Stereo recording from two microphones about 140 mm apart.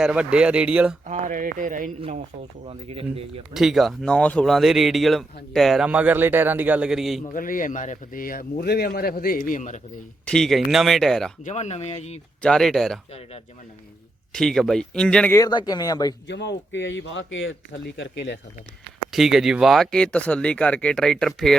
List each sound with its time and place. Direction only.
0.0 s a man's voice: 5° right (ahead or behind)
1.0 s speech: 60° right (ahead or behind)
2.6 s speech: 40° right (ahead or behind)
3.5 s speech: centre (ahead or behind)
5.9 s a man's voice: 10° right (ahead or behind)
7.3 s speech: 75° left (ahead or behind); by 9.4 s 90° left
9.5 s speech: 60° left (ahead or behind)
10.2 s speech: 5° left (ahead or behind)
11.4 s speech: 55° left (ahead or behind)
12.4 s speech: 5° left (ahead or behind)
14.3 s speech: 5° left (ahead or behind)
15.3 s speech: 25° left (ahead or behind)
19.1 s speech: centre (ahead or behind)